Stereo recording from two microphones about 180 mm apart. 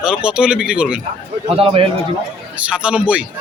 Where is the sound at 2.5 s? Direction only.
5° right (ahead or behind).